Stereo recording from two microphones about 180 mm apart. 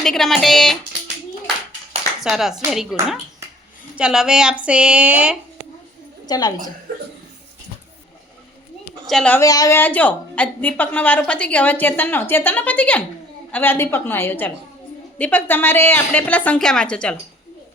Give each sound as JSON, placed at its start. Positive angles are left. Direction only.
{"t": 0.0, "sound": "speech", "side_deg": 0}
{"t": 2.2, "sound": "speech", "side_deg": 0}
{"t": 3.9, "sound": "speech", "side_deg": -5}
{"t": 6.2, "sound": "a woman's voice", "side_deg": 20}
{"t": 9.0, "sound": "speech", "side_deg": 5}
{"t": 9.4, "sound": "a woman's voice", "side_deg": 20}